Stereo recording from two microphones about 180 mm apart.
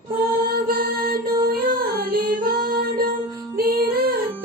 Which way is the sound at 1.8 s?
55° right (ahead or behind).